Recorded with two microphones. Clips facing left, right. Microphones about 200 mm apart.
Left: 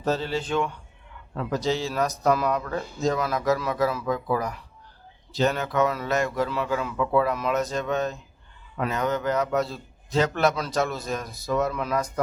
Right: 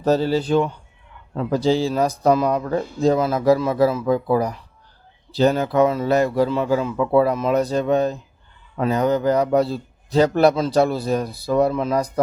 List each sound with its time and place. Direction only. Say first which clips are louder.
0.0 s a man's voice: right 8 dB; 40° right (ahead or behind)